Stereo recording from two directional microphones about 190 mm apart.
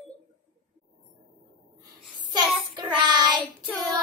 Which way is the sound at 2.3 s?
20° right (ahead or behind).